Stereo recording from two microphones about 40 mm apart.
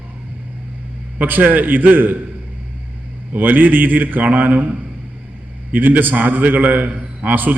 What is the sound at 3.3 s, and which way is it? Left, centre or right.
A man's voice, right.